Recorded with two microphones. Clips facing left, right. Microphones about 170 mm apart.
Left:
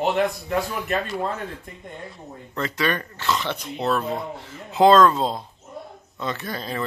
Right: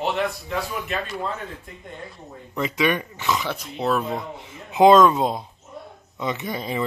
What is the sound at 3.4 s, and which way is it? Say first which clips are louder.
Speech: even; centre (ahead or behind).